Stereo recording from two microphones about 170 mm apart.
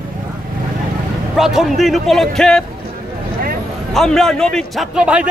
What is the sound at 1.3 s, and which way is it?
A man's voice, centre (ahead or behind).